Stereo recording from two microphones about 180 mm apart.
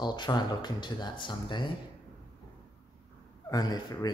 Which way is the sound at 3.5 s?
20° left (ahead or behind).